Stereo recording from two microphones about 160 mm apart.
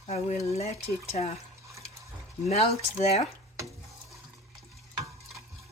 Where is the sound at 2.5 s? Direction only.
40° left (ahead or behind).